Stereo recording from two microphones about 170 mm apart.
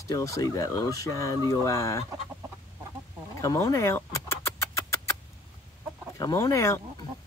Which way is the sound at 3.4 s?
20° left (ahead or behind).